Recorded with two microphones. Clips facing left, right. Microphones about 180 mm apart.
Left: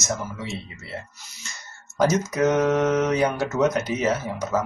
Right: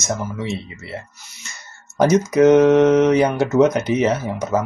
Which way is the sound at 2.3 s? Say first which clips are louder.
Right 9 dB; 20° right (ahead or behind).